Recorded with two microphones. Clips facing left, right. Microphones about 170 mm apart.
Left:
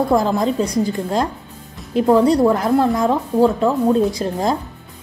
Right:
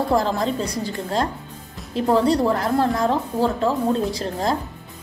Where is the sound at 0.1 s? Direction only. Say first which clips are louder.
Left 4 dB; 15° left (ahead or behind).